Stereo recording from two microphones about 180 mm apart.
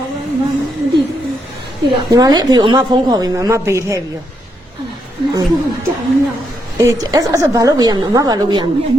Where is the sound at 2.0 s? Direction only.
20° right (ahead or behind).